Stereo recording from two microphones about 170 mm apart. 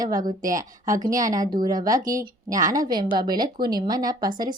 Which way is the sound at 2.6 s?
20° right (ahead or behind).